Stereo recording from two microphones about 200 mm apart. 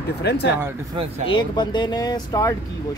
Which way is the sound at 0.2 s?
55° left (ahead or behind).